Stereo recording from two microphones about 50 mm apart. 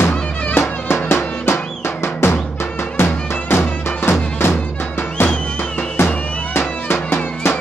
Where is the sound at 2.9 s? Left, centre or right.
Left.